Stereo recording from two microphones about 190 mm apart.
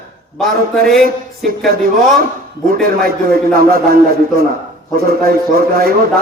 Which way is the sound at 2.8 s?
50° right (ahead or behind).